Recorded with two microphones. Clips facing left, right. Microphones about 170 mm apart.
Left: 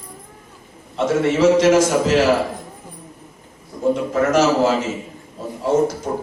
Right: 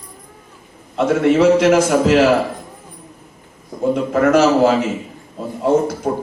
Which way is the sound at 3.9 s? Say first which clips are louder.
Right 4 dB; 60° right (ahead or behind).